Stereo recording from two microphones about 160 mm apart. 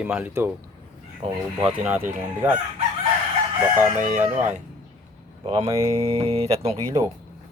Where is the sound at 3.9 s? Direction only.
50° right (ahead or behind).